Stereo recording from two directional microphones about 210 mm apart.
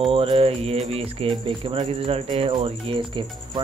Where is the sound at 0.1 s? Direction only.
25° right (ahead or behind).